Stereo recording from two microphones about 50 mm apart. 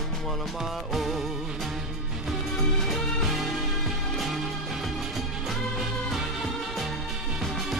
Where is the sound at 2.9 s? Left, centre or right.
Centre.